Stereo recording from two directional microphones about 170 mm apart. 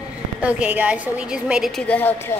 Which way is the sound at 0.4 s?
10° right (ahead or behind).